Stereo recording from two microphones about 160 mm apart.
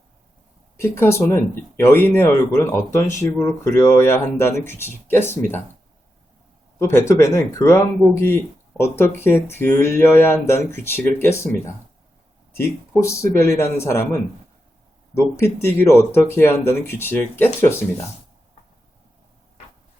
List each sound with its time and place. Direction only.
0.8 s speech: 15° left (ahead or behind)
6.7 s speech: 15° left (ahead or behind)
13.0 s speech: 15° left (ahead or behind)